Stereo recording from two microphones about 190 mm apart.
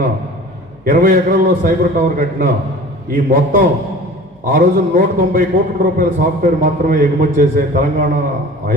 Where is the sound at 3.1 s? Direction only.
50° right (ahead or behind).